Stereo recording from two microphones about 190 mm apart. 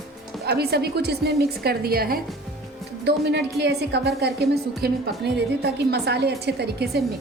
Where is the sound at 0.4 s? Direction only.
55° right (ahead or behind).